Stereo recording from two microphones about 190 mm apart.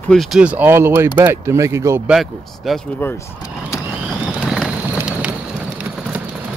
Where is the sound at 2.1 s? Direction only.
Centre (ahead or behind).